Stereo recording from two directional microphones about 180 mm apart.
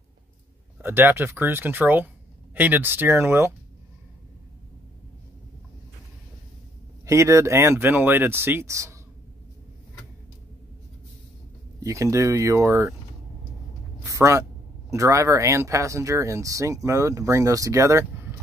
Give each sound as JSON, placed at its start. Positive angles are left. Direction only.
{"t": 0.8, "sound": "speech", "side_deg": -10}
{"t": 7.1, "sound": "speech", "side_deg": -15}
{"t": 11.8, "sound": "speech", "side_deg": -15}
{"t": 14.0, "sound": "a sound", "side_deg": -15}
{"t": 14.9, "sound": "speech", "side_deg": -15}